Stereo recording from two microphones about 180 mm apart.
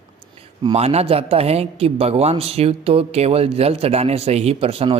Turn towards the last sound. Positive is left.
turn(degrees=-30)  # may be behind; listen again after turning